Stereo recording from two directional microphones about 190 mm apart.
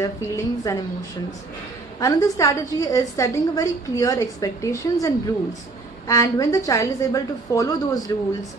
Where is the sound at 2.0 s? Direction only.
15° left (ahead or behind).